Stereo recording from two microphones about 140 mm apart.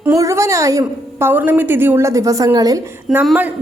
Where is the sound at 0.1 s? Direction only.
25° right (ahead or behind).